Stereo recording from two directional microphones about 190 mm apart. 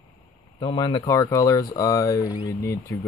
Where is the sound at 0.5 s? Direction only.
20° left (ahead or behind).